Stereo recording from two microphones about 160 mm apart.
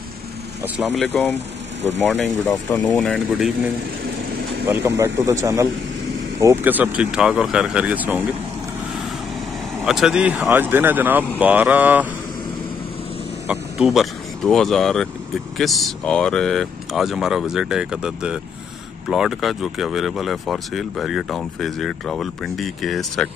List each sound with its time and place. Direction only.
0.7 s speech: centre (ahead or behind)
1.3 s vehicle: 45° right (ahead or behind)
2.0 s speech: centre (ahead or behind)
4.6 s speech: 15° right (ahead or behind)
9.8 s speech: 5° right (ahead or behind)
13.5 s speech: 5° right (ahead or behind)